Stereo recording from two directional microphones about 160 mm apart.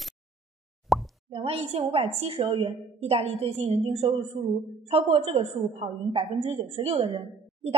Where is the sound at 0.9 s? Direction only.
Centre (ahead or behind).